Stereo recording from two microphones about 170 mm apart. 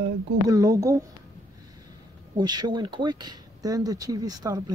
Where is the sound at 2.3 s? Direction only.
25° right (ahead or behind).